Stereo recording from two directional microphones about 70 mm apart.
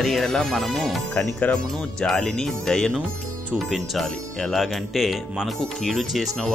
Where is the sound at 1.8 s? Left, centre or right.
Centre.